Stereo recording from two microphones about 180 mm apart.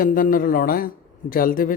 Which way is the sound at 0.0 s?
50° left (ahead or behind).